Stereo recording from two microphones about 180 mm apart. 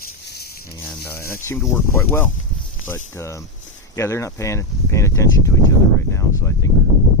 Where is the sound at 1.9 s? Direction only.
10° left (ahead or behind).